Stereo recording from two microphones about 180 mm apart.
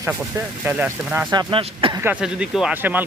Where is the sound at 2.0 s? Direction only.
5° right (ahead or behind).